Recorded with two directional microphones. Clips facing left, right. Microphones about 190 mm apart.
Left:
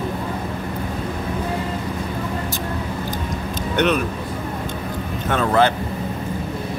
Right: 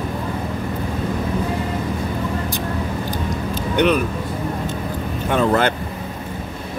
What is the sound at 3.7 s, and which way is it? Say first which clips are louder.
Speech: right 2 dB; 10° right (ahead or behind).